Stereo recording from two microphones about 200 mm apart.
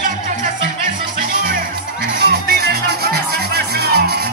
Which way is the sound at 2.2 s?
50° right (ahead or behind).